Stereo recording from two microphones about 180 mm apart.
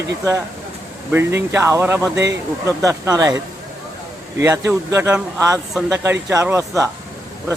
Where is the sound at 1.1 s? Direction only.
15° right (ahead or behind).